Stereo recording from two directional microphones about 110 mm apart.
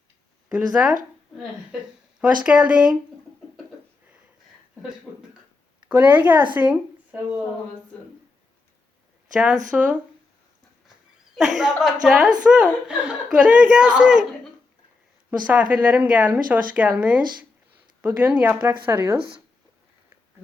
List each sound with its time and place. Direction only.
0.4 s speech: 10° right (ahead or behind)
2.4 s speech: 10° right (ahead or behind)
5.9 s speech: 15° right (ahead or behind)
9.3 s speech: 10° right (ahead or behind)
11.3 s a woman's voice: 5° right (ahead or behind)
15.3 s speech: 15° right (ahead or behind)